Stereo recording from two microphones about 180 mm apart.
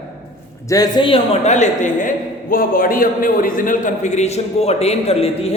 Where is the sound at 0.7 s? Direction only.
25° left (ahead or behind).